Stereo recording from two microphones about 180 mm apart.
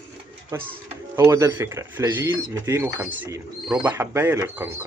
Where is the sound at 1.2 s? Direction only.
15° right (ahead or behind).